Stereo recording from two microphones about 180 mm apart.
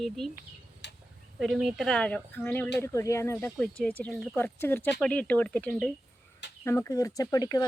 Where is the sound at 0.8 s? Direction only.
70° left (ahead or behind).